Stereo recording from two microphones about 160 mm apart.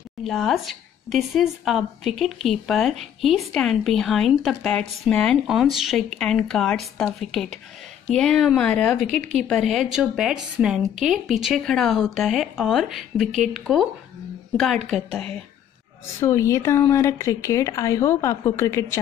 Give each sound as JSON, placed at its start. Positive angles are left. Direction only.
{"t": 0.2, "sound": "speech", "side_deg": 0}
{"t": 14.9, "sound": "speech", "side_deg": 5}
{"t": 16.2, "sound": "speech", "side_deg": 15}